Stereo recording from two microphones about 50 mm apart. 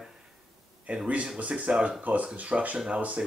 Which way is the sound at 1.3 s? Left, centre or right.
Right.